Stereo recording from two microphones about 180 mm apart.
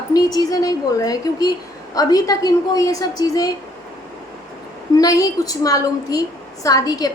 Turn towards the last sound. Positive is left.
turn(degrees=20)  # may be behind; listen again after turning